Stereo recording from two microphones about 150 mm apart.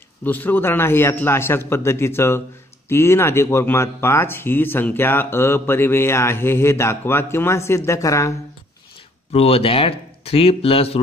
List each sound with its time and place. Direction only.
0.2 s speech: 10° left (ahead or behind)
9.3 s speech: 40° left (ahead or behind)